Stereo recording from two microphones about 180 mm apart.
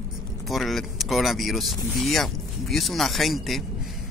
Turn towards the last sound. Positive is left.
turn(degrees=0)  # may be behind; listen again after turning